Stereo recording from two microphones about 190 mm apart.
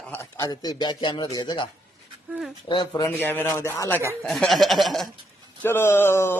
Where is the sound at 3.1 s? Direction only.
10° left (ahead or behind).